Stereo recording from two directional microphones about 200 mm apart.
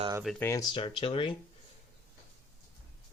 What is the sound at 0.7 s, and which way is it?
Speech, 25° left (ahead or behind).